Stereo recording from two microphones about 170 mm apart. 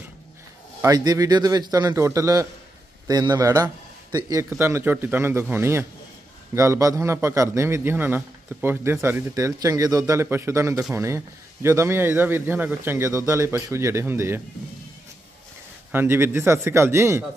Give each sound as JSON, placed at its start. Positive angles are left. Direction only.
{"t": 0.8, "sound": "a man's voice", "side_deg": -20}
{"t": 15.9, "sound": "a man's voice", "side_deg": -15}